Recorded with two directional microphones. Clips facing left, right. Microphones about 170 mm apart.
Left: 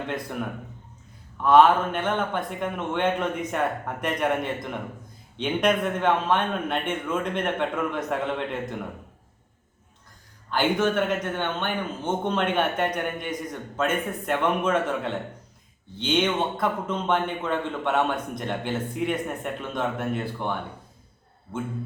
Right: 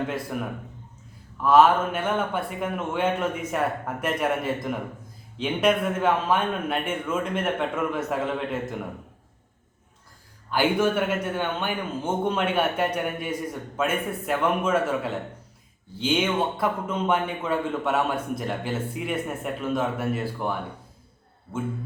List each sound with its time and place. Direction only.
1.4 s a man's voice: 5° right (ahead or behind)
10.5 s a man's voice: 10° right (ahead or behind)